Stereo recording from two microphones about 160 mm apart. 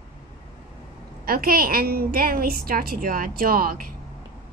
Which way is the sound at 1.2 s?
65° right (ahead or behind).